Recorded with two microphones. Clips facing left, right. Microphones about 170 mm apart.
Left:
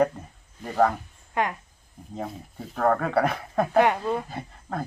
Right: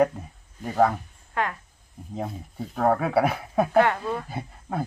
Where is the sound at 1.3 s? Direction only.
20° left (ahead or behind).